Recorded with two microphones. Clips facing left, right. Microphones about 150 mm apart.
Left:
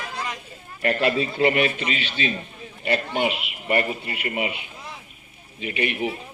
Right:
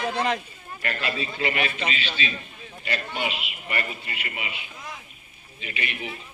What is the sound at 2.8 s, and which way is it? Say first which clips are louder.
A man's voice: left 7 dB; 55° left (ahead or behind).